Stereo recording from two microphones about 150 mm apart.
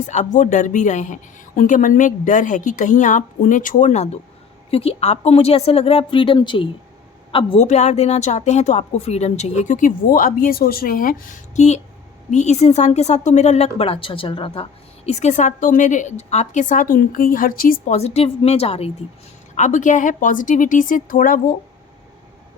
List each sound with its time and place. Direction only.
0.0 s a man's voice: 50° left (ahead or behind)
7.6 s a woman's voice: 50° left (ahead or behind); by 17.9 s 70° left (ahead or behind)
17.9 s a woman's voice: 45° left (ahead or behind)
19.5 s speech: 55° left (ahead or behind)